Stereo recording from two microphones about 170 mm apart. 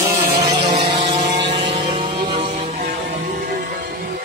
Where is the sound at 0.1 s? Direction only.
20° right (ahead or behind).